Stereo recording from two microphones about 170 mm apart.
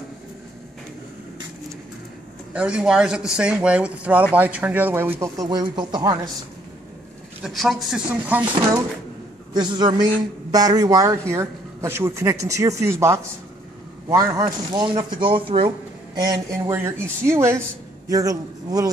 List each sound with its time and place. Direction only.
2.5 s speech: 5° right (ahead or behind)
5.2 s speech: 20° right (ahead or behind)
7.4 s speech: centre (ahead or behind)
9.5 s speech: 25° right (ahead or behind)
16.2 s speech: 20° right (ahead or behind)